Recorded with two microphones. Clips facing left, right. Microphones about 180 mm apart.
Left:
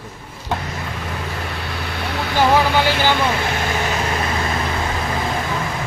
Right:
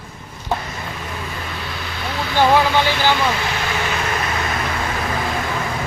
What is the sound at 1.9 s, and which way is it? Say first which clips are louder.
Vehicle: left 1 dB; 60° left (ahead or behind).